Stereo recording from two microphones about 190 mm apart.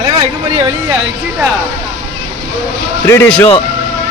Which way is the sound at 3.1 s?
15° left (ahead or behind).